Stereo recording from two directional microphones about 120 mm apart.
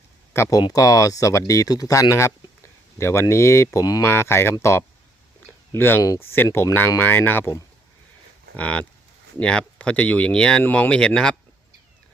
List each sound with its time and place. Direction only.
0.6 s speech: 30° left (ahead or behind)
4.0 s speech: 20° left (ahead or behind)
8.5 s speech: 10° left (ahead or behind)